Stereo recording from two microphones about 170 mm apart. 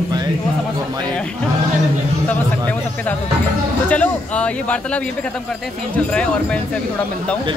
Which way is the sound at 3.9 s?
10° left (ahead or behind).